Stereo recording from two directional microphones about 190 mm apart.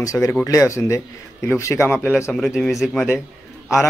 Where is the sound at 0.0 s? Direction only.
15° left (ahead or behind).